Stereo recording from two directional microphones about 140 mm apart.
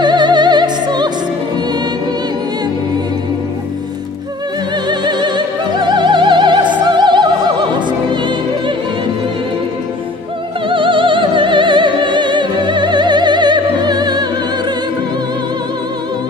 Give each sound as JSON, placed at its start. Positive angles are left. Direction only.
{"t": 0.0, "sound": "music", "side_deg": -30}
{"t": 4.8, "sound": "opera", "side_deg": -30}
{"t": 10.7, "sound": "music", "side_deg": -35}